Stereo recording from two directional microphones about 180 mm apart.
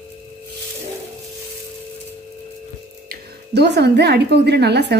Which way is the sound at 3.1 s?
70° right (ahead or behind).